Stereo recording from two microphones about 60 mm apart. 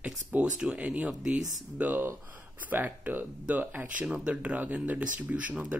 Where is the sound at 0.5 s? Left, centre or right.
Centre.